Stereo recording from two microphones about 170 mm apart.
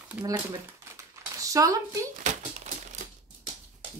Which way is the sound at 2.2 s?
45° right (ahead or behind).